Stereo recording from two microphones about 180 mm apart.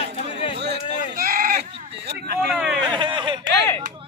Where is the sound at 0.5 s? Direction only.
65° right (ahead or behind).